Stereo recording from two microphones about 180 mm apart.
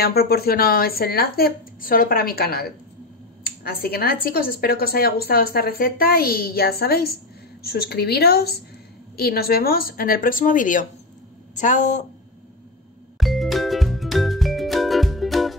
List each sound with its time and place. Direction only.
0.0 s speech: 60° left (ahead or behind); by 12.0 s 45° left (ahead or behind)
13.2 s music: centre (ahead or behind)